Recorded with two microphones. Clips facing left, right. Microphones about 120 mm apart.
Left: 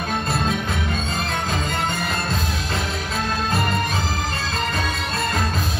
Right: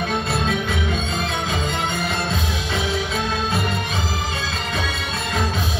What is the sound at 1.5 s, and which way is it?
Music, centre (ahead or behind).